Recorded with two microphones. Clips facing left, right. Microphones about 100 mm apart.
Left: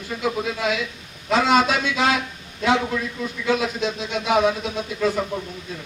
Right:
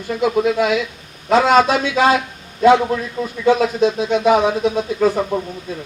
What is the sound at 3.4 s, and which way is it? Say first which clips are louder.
Speech: right 8 dB; 40° right (ahead or behind).